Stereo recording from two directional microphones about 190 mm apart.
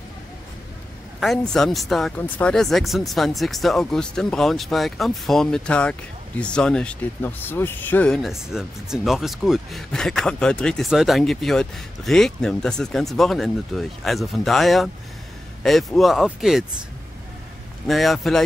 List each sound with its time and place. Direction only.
1.2 s speech: centre (ahead or behind)
17.8 s speech: centre (ahead or behind)